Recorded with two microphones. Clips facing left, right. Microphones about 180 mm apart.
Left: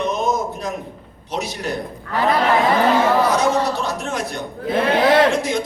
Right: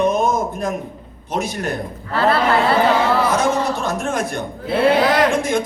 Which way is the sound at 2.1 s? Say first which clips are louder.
Right 1 dB; 15° left (ahead or behind).